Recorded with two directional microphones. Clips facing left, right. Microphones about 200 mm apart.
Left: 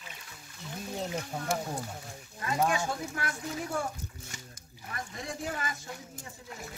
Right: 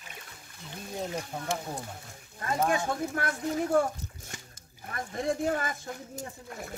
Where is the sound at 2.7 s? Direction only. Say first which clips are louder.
Right 3 dB; 50° right (ahead or behind).